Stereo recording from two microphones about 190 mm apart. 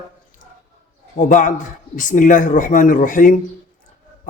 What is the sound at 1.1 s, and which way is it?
Speech, 45° left (ahead or behind).